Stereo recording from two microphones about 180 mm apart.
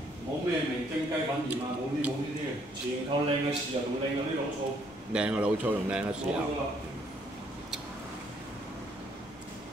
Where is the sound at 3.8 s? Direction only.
30° right (ahead or behind).